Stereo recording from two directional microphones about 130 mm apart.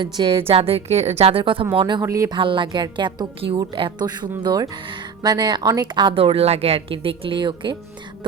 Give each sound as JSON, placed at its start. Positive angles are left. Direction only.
{"t": 0.0, "sound": "a woman's voice", "side_deg": -40}
{"t": 2.0, "sound": "speech", "side_deg": -25}
{"t": 2.3, "sound": "speech", "side_deg": -40}